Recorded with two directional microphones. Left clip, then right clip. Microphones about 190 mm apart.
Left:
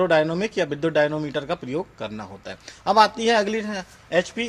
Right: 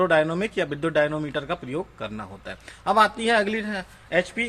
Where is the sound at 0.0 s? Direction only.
20° left (ahead or behind).